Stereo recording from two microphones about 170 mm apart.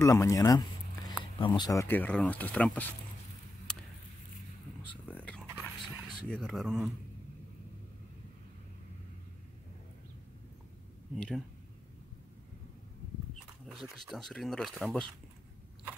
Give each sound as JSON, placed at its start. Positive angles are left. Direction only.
{"t": 0.0, "sound": "a sound", "side_deg": 15}
{"t": 1.4, "sound": "speech", "side_deg": 25}
{"t": 4.8, "sound": "a sound", "side_deg": 10}
{"t": 6.2, "sound": "speech", "side_deg": 5}
{"t": 11.1, "sound": "speech", "side_deg": 5}
{"t": 13.7, "sound": "speech", "side_deg": 0}